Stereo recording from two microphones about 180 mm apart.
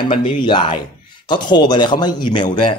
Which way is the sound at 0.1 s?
30° left (ahead or behind).